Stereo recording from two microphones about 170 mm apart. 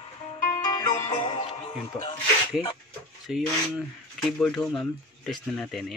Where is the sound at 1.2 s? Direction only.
35° left (ahead or behind).